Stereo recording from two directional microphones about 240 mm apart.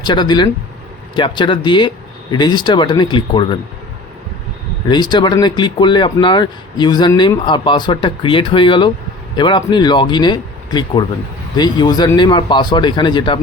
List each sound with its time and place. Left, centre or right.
0.0 s speech: centre
4.9 s speech: centre